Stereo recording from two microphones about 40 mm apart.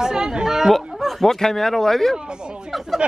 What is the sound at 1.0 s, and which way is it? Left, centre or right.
Speech, centre.